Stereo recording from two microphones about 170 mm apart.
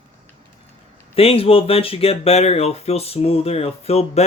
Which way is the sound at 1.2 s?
35° left (ahead or behind).